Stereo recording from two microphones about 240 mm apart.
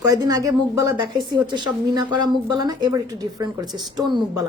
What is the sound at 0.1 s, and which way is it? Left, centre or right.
A woman's voice, centre.